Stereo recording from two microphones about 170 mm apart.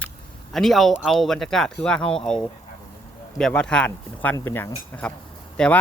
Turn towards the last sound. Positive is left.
turn(degrees=5)  # may be behind; listen again after turning